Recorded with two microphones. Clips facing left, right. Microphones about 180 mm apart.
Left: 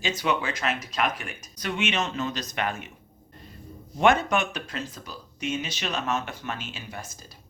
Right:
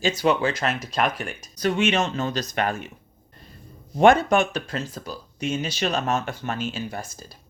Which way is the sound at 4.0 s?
35° right (ahead or behind).